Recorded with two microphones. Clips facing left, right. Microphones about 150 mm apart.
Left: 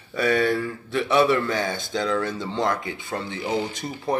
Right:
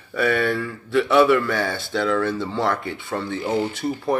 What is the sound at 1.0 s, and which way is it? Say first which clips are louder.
Speech: right 4 dB; 25° left (ahead or behind).